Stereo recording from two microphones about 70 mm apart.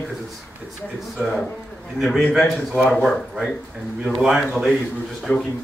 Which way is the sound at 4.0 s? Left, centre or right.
Centre.